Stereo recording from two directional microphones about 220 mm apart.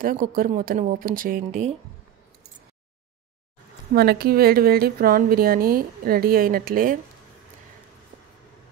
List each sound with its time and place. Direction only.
0.0 s a woman's voice: 40° right (ahead or behind)
3.9 s a woman's voice: 45° right (ahead or behind)